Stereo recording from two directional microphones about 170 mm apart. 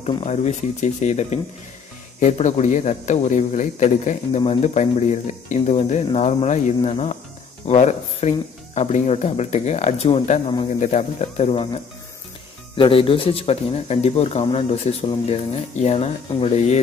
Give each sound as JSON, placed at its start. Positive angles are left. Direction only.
{"t": 0.0, "sound": "speech", "side_deg": 40}